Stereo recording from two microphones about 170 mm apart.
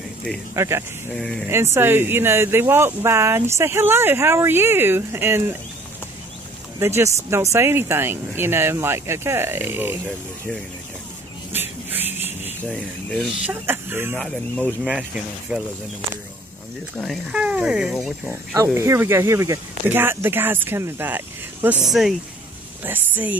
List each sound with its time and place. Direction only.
0.6 s speech: 15° right (ahead or behind)
1.1 s speech: 5° left (ahead or behind)
1.5 s speech: 15° right (ahead or behind)
6.8 s speech: 15° right (ahead or behind)
11.5 s music: 10° right (ahead or behind)
12.6 s speech: 5° left (ahead or behind)
13.5 s speech: 10° right (ahead or behind)
14.1 s speech: 5° left (ahead or behind)
17.0 s speech: centre (ahead or behind)
18.7 s speech: 15° right (ahead or behind)
21.8 s speech: centre (ahead or behind)